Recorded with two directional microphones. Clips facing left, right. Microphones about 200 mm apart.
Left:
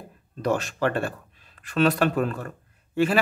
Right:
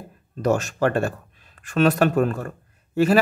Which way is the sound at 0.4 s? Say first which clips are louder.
Right 4 dB; 45° right (ahead or behind).